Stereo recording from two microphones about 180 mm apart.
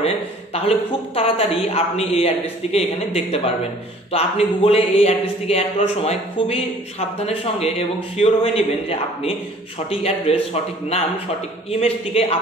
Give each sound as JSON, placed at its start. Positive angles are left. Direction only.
{"t": 0.0, "sound": "speech", "side_deg": 35}